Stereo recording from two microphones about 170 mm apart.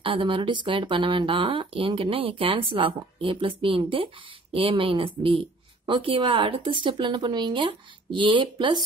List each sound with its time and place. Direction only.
0.0 s speech: 30° right (ahead or behind)